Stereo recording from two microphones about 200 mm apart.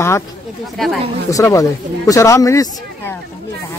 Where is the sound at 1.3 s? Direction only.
15° left (ahead or behind).